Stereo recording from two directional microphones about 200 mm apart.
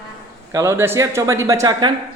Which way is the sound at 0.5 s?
15° right (ahead or behind).